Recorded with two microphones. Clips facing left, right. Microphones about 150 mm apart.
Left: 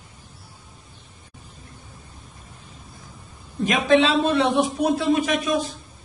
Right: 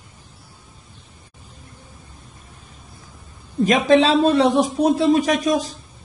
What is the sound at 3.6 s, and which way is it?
Speech, 35° right (ahead or behind).